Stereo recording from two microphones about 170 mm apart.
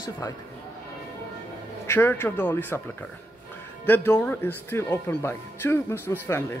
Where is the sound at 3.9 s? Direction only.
10° left (ahead or behind).